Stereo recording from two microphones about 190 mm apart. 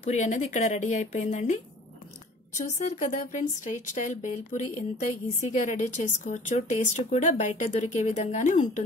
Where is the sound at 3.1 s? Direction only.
40° left (ahead or behind).